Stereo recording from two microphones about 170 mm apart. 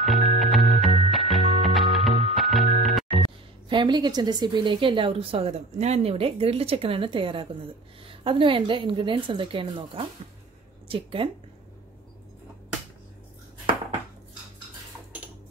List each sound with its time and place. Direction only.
0.0 s music: centre (ahead or behind)
3.6 s a woman's voice: 25° right (ahead or behind)